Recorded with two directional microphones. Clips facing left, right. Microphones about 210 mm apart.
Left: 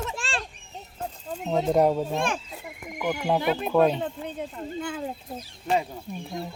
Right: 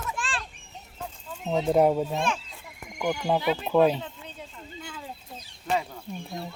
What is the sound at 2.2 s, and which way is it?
Speech, 50° left (ahead or behind).